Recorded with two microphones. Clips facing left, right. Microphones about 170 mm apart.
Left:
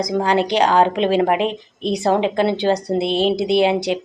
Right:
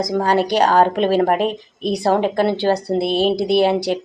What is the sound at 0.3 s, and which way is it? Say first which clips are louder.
Speech: right 1 dB; 45° right (ahead or behind).